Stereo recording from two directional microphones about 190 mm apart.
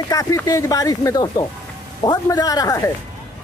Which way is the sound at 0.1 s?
20° left (ahead or behind).